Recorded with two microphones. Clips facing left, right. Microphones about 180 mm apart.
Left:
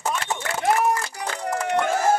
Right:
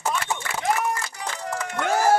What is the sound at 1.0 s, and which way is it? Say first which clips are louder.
Music: left 3 dB; 55° left (ahead or behind).